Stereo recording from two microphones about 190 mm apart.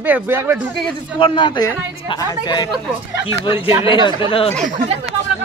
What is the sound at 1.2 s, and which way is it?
Speech, 25° left (ahead or behind).